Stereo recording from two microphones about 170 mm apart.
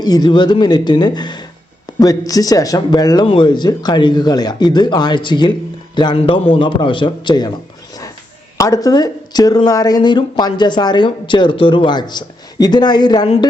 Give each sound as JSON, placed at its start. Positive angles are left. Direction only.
{"t": 0.0, "sound": "speech", "side_deg": 25}
{"t": 8.5, "sound": "speech", "side_deg": 20}